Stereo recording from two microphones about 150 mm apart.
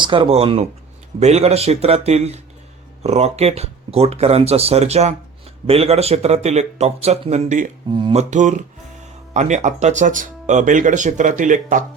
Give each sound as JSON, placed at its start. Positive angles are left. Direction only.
{"t": 0.0, "sound": "speech", "side_deg": -35}
{"t": 7.9, "sound": "speech", "side_deg": -35}
{"t": 8.2, "sound": "speech", "side_deg": -55}